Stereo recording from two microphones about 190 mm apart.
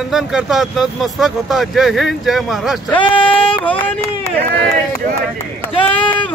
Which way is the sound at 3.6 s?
10° left (ahead or behind).